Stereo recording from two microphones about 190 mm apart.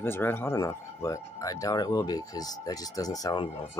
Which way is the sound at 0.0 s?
10° left (ahead or behind).